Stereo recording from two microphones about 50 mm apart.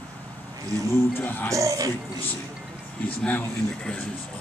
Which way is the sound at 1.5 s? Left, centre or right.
Right.